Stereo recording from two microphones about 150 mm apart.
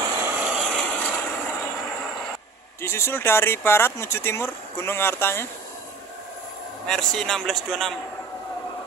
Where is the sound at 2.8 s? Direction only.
15° left (ahead or behind).